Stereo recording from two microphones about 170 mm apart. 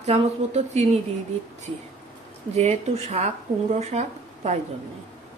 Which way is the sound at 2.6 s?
40° right (ahead or behind).